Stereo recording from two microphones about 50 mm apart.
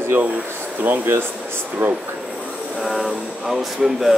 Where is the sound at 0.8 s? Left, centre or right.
Right.